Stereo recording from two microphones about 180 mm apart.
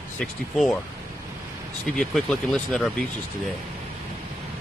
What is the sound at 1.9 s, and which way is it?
Speech, centre (ahead or behind).